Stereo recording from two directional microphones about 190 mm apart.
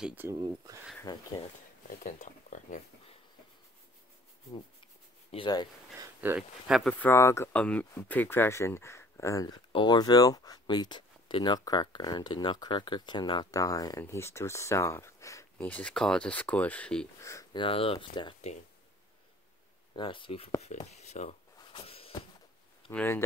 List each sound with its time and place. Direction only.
0.0 s speech: 10° right (ahead or behind)
1.1 s speech: 20° left (ahead or behind)
1.9 s speech: 40° left (ahead or behind)
5.3 s speech: 25° left (ahead or behind)
5.9 s speech: 10° right (ahead or behind)
17.2 s speech: 15° left (ahead or behind)
20.0 s speech: 25° left (ahead or behind)
21.5 s a sound: 30° left (ahead or behind)
22.8 s speech: 10° left (ahead or behind)